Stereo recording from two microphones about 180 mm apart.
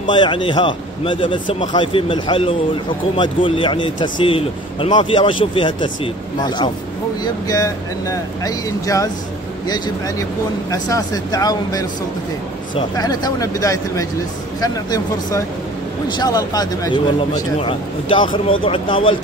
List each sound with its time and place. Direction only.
0.0 s a man's voice: 25° left (ahead or behind)
7.4 s a man's voice: 20° left (ahead or behind)
12.9 s a man's voice: 20° left (ahead or behind)